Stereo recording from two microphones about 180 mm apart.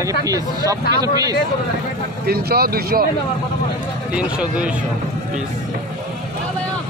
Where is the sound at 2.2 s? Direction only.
60° right (ahead or behind).